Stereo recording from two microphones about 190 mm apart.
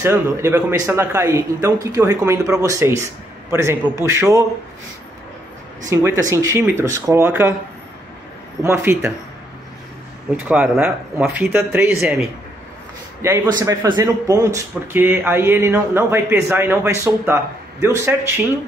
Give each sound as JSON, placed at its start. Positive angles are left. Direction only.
{"t": 0.0, "sound": "speech", "side_deg": -10}
{"t": 5.9, "sound": "speech", "side_deg": -15}
{"t": 8.6, "sound": "speech", "side_deg": -15}
{"t": 10.3, "sound": "speech", "side_deg": -10}
{"t": 13.2, "sound": "speech", "side_deg": -20}